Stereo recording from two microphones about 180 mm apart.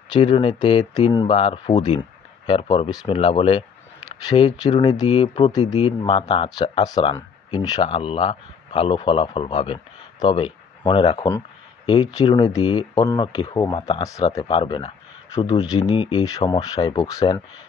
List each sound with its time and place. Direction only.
0.1 s speech: 30° left (ahead or behind)
5.8 s speech: 35° left (ahead or behind)
14.0 s speech: 20° left (ahead or behind)
15.9 s speech: 25° left (ahead or behind)